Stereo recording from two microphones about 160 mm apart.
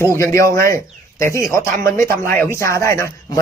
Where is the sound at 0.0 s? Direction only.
15° left (ahead or behind).